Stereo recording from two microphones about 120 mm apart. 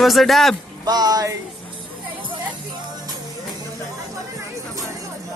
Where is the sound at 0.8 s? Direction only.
35° right (ahead or behind).